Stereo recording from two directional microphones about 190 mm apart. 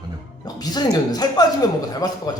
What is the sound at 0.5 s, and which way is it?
Speech, 20° left (ahead or behind).